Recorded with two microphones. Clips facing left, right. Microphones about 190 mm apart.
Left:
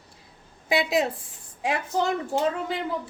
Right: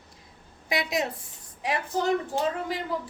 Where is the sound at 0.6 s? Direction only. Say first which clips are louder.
Left 5 dB; 25° left (ahead or behind).